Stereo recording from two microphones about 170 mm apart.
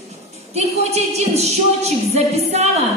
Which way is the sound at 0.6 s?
40° right (ahead or behind).